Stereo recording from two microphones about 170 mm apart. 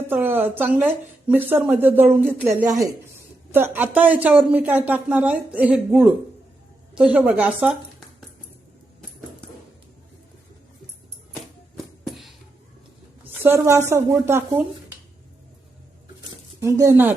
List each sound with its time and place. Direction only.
0.1 s a woman's voice: 10° right (ahead or behind)
11.8 s music: centre (ahead or behind)
13.4 s speech: 15° right (ahead or behind)
16.6 s speech: 15° right (ahead or behind)